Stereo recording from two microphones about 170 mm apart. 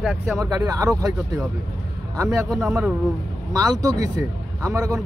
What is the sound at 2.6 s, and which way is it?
Speech, 15° right (ahead or behind).